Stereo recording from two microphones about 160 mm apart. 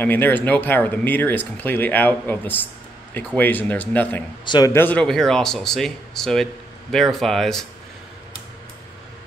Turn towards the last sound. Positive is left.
turn(degrees=0)  # may be behind; listen again after turning